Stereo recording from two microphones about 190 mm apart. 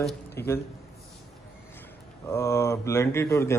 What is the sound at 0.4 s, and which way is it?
Speech, 15° left (ahead or behind).